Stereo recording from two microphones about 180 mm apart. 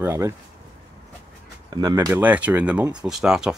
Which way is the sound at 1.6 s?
20° right (ahead or behind).